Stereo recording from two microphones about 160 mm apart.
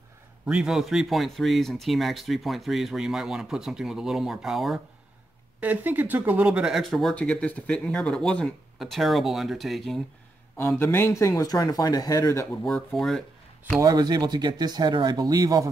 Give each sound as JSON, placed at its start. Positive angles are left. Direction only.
{"t": 0.5, "sound": "speech", "side_deg": -5}
{"t": 10.8, "sound": "speech", "side_deg": 15}
{"t": 12.6, "sound": "speech", "side_deg": 0}
{"t": 13.7, "sound": "speech", "side_deg": -25}